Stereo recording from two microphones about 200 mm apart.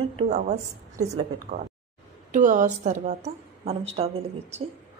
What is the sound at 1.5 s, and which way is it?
A woman's voice, 50° right (ahead or behind).